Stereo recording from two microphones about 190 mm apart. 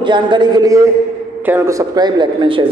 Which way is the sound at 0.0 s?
25° right (ahead or behind).